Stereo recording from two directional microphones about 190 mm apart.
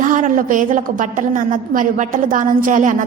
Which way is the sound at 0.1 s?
45° right (ahead or behind).